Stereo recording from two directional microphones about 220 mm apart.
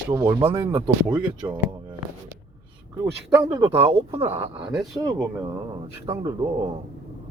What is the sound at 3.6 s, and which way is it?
Speech, 25° right (ahead or behind).